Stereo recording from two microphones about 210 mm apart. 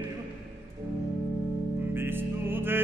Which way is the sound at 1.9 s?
10° right (ahead or behind).